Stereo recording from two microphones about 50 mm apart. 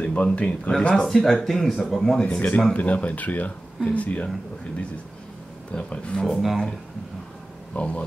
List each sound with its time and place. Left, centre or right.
0.0 s speech: left
0.9 s speech: centre
2.2 s speech: left
5.7 s speech: left
6.4 s speech: centre
7.7 s speech: left